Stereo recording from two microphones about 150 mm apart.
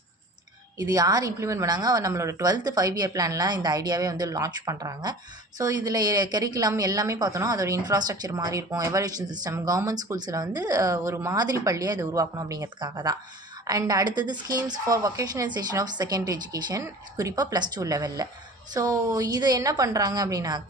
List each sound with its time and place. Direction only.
0.8 s a woman's voice: 25° right (ahead or behind)